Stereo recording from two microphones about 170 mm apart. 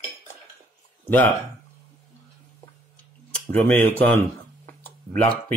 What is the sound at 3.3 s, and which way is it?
Speech, 5° left (ahead or behind).